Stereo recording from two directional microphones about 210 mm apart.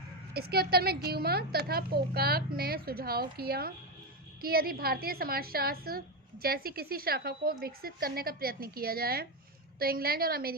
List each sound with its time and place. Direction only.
0.3 s speech: 45° right (ahead or behind)